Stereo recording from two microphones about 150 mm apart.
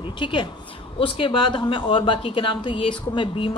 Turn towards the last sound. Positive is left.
turn(degrees=35)  # may be behind; listen again after turning